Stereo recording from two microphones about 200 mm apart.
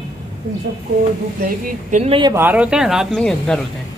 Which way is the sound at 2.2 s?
10° right (ahead or behind).